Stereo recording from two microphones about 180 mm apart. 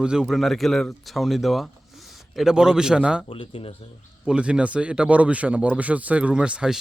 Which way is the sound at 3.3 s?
30° left (ahead or behind).